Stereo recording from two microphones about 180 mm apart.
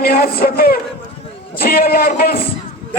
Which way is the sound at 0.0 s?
55° left (ahead or behind).